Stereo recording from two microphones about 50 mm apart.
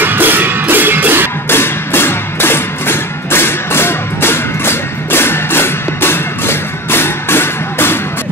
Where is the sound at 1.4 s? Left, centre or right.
Left.